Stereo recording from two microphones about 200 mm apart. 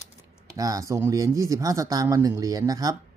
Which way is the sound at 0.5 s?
15° right (ahead or behind).